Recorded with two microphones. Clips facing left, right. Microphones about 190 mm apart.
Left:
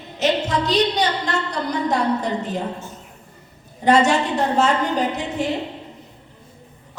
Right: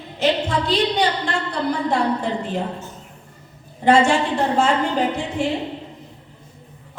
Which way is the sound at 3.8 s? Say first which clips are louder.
Right 1 dB; 40° left (ahead or behind).